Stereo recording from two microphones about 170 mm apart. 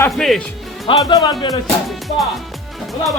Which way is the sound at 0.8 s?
25° left (ahead or behind).